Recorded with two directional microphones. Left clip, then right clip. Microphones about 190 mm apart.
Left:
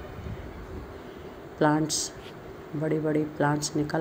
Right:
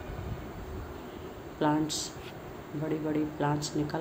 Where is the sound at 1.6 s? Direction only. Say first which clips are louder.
Left 4 dB; 25° left (ahead or behind).